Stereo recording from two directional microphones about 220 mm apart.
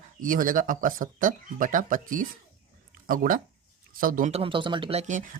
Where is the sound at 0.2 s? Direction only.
40° right (ahead or behind).